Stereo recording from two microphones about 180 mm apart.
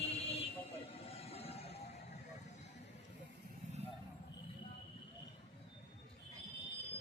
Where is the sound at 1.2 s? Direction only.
35° left (ahead or behind).